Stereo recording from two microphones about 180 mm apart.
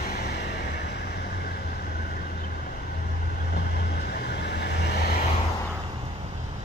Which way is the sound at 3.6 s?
65° left (ahead or behind).